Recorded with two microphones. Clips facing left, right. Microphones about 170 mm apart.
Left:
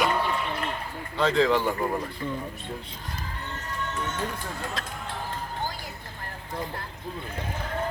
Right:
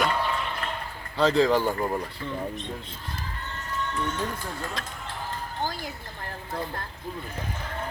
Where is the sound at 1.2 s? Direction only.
5° right (ahead or behind).